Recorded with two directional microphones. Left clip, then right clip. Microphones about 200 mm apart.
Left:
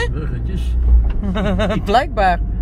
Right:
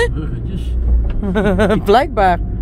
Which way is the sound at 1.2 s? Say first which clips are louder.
Right 5 dB; 25° right (ahead or behind).